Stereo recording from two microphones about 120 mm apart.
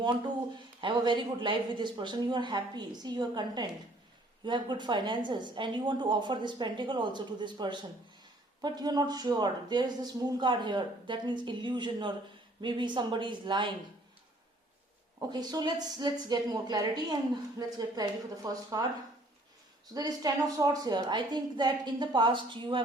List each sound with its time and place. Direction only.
0.8 s speech: 40° right (ahead or behind)
15.3 s speech: 35° right (ahead or behind)
19.9 s speech: 30° right (ahead or behind)